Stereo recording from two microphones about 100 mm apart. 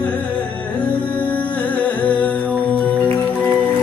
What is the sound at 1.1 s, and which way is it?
Music, 15° left (ahead or behind).